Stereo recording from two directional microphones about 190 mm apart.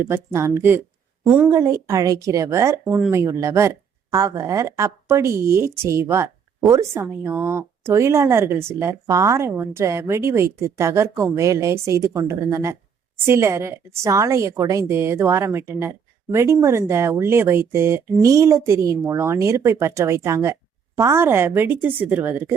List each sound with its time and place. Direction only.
0.0 s speech: 15° right (ahead or behind)